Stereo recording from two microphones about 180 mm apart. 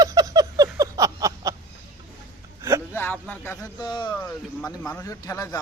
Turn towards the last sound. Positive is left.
turn(degrees=15)  # may be behind; listen again after turning